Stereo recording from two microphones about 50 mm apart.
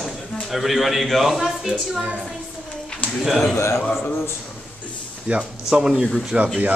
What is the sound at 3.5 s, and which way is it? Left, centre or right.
Speech, left.